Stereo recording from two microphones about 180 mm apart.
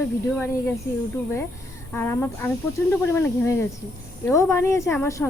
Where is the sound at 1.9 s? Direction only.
15° left (ahead or behind).